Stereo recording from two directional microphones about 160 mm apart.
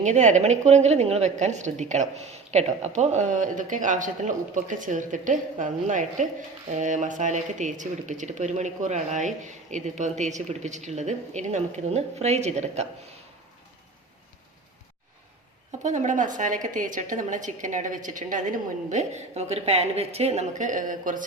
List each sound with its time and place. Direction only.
0.0 s a woman's voice: 45° right (ahead or behind)
15.8 s a woman's voice: 50° right (ahead or behind)